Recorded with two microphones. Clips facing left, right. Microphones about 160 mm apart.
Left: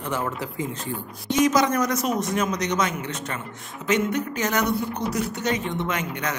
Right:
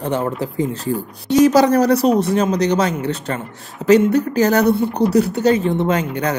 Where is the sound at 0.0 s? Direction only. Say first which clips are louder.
Right 7 dB; 30° right (ahead or behind).